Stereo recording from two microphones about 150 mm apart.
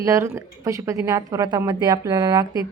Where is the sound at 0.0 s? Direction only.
20° right (ahead or behind).